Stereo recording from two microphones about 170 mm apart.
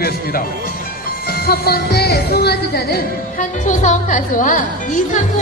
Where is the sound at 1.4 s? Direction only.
65° left (ahead or behind).